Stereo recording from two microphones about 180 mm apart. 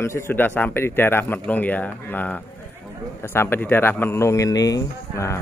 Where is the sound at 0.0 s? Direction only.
15° left (ahead or behind).